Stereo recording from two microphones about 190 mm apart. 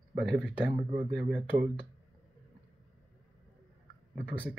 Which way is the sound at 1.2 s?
5° right (ahead or behind).